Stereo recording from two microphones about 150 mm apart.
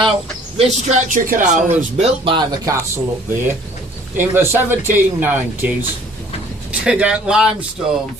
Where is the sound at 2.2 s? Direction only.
35° right (ahead or behind).